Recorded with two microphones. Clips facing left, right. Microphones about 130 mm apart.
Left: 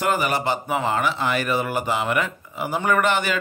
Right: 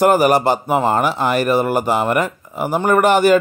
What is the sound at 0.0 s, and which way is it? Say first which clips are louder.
A man's voice: right 9 dB; 45° right (ahead or behind).